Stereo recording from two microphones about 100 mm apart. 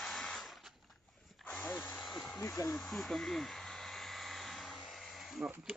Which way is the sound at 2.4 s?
30° left (ahead or behind).